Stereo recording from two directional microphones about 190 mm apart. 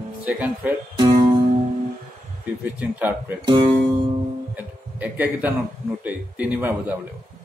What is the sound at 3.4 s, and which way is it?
Speech, 25° right (ahead or behind).